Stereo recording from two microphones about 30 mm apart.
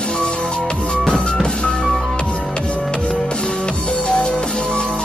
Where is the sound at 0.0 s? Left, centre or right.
Left.